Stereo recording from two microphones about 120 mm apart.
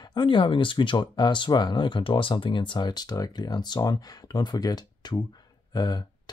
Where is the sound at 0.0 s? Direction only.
40° left (ahead or behind).